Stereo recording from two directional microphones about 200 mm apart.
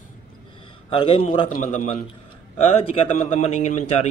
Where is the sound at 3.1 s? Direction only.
35° left (ahead or behind).